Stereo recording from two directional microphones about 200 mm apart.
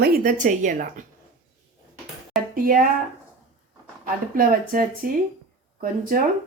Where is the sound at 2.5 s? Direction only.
45° right (ahead or behind).